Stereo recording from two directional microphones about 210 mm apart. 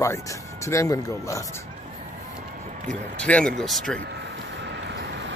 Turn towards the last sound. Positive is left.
turn(degrees=-55)  # may be behind; listen again after turning